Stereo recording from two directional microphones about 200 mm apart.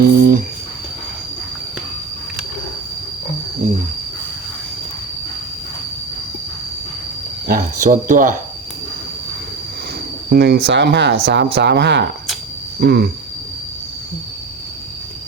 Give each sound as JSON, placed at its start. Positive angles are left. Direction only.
{"t": 0.0, "sound": "a sound", "side_deg": -50}
{"t": 7.4, "sound": "cricket", "side_deg": -45}
{"t": 10.2, "sound": "speech", "side_deg": -55}